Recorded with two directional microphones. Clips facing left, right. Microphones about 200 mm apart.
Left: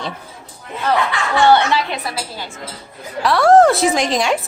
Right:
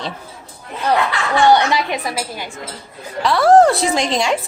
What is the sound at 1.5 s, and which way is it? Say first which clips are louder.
A woman's voice: even; 15° right (ahead or behind).